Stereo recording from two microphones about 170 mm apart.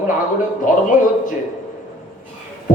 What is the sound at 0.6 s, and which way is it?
Speech, 50° left (ahead or behind).